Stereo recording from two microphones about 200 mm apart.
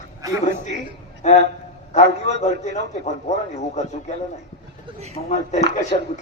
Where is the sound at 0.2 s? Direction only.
15° right (ahead or behind).